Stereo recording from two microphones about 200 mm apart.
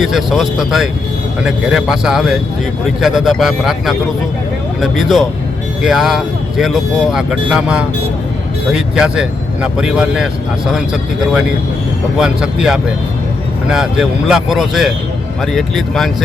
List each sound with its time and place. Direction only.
0.0 s speech: centre (ahead or behind)